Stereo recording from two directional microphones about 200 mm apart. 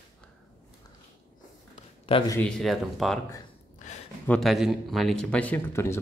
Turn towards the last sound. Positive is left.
turn(degrees=10)  # may be behind; listen again after turning